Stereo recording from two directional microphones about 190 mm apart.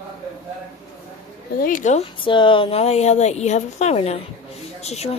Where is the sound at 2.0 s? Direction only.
25° left (ahead or behind).